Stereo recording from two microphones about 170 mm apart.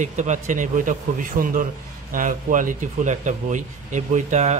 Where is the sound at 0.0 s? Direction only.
45° right (ahead or behind).